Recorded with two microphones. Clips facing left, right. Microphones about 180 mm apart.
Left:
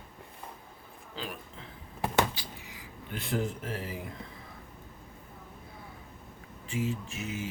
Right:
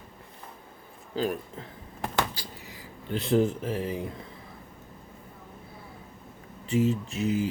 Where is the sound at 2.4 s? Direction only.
40° right (ahead or behind).